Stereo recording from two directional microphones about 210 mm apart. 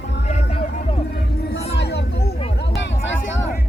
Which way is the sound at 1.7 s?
50° left (ahead or behind).